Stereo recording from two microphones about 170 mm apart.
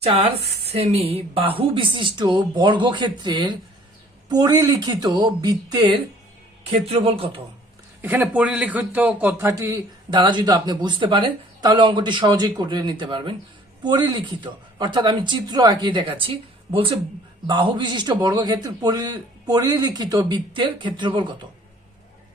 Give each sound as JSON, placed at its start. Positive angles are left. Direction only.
{"t": 0.0, "sound": "a man's voice", "side_deg": -35}
{"t": 6.7, "sound": "a man's voice", "side_deg": -35}
{"t": 8.0, "sound": "a man's voice", "side_deg": -10}